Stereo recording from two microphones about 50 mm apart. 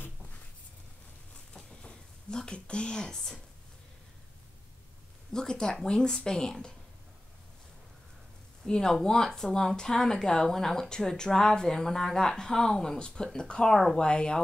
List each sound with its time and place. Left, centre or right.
1.5 s a sound: centre
5.3 s speech: centre
8.6 s speech: centre